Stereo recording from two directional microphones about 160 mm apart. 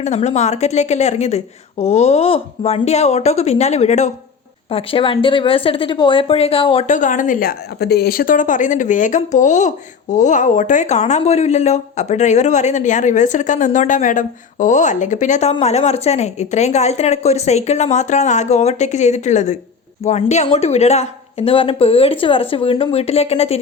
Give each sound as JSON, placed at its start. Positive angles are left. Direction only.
{"t": 0.0, "sound": "speech", "side_deg": 45}
{"t": 4.7, "sound": "speech", "side_deg": 35}
{"t": 6.8, "sound": "speech", "side_deg": 50}